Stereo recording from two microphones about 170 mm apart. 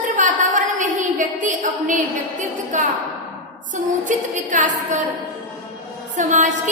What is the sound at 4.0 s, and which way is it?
A woman's voice, 50° right (ahead or behind).